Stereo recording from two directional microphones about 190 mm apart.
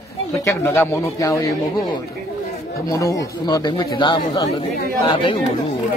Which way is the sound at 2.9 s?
20° left (ahead or behind).